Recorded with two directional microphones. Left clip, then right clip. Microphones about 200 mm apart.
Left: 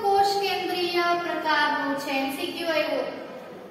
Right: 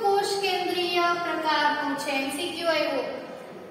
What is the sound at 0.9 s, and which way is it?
Child singing, 15° right (ahead or behind).